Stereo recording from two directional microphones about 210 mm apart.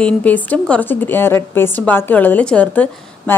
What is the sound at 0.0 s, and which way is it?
A woman's voice, 5° left (ahead or behind).